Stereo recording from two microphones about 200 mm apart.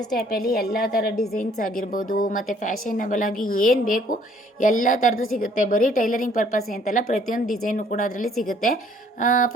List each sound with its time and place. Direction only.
0.2 s a woman's voice: 50° left (ahead or behind)